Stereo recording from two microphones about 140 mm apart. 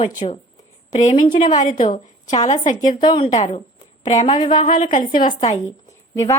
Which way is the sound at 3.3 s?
60° left (ahead or behind).